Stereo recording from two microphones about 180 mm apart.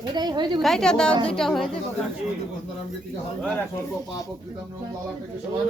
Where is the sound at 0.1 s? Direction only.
25° right (ahead or behind).